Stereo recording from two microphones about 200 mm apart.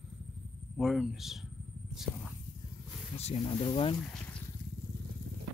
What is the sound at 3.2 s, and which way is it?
Speech, 30° left (ahead or behind).